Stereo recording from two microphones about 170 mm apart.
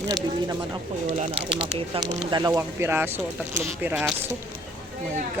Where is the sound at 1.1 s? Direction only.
35° right (ahead or behind); by 3.9 s 10° right (ahead or behind).